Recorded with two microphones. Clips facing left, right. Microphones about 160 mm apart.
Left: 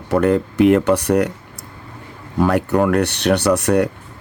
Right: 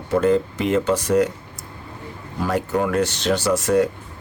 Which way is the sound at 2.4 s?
65° left (ahead or behind).